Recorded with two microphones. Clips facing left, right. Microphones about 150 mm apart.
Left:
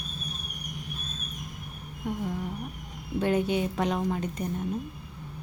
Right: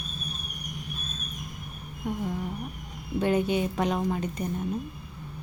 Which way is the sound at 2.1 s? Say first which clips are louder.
Right 1 dB; 15° right (ahead or behind).